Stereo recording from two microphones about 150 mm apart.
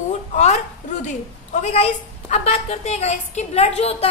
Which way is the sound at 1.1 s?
50° left (ahead or behind).